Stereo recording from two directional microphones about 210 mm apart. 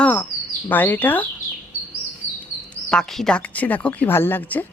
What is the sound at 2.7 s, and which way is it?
Speech, 5° left (ahead or behind).